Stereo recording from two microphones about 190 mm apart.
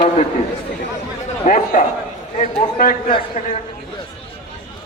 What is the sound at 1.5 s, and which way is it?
Speech, 40° left (ahead or behind).